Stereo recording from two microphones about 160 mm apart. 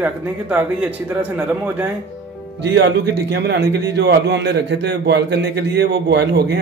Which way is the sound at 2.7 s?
90° right.